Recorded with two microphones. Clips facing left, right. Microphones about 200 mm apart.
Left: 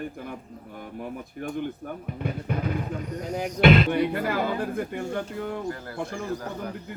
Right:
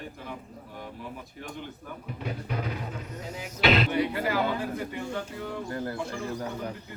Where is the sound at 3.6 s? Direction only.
55° left (ahead or behind).